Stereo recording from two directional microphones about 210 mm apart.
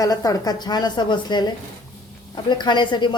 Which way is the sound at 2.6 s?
20° left (ahead or behind).